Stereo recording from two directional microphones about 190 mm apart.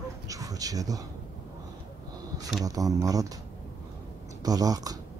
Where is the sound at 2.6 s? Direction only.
20° right (ahead or behind).